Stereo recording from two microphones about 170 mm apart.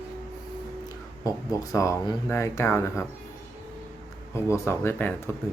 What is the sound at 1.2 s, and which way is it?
Speech, 20° left (ahead or behind).